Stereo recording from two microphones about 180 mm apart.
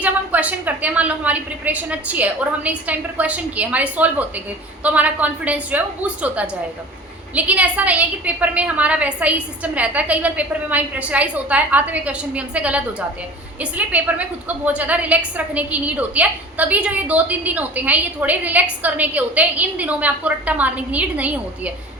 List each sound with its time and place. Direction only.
0.0 s a woman's voice: 10° right (ahead or behind)